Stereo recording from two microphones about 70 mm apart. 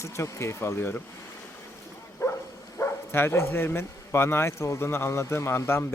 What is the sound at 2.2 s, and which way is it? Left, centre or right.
Bow-wow, left.